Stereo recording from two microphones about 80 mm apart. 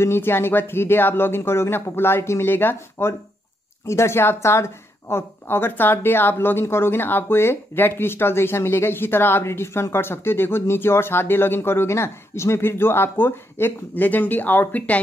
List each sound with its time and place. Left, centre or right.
0.0 s a woman's voice: left